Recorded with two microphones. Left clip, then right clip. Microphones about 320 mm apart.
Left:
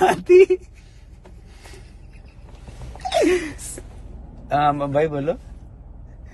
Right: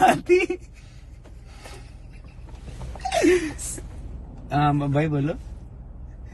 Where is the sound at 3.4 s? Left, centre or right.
Left.